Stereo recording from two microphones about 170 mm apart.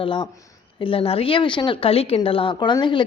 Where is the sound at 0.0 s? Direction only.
30° left (ahead or behind).